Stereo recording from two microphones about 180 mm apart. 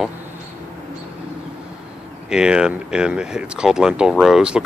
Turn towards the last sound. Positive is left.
turn(degrees=-5)  # may be behind; listen again after turning